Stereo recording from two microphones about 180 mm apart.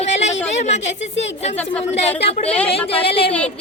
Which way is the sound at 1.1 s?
90° left.